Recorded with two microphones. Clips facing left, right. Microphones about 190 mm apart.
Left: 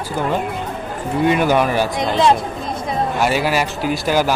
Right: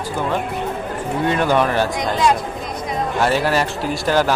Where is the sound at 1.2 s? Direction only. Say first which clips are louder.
Left 2 dB; 10° left (ahead or behind).